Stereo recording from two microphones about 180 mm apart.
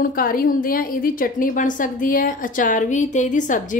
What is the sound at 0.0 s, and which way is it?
A woman's voice, 55° left (ahead or behind).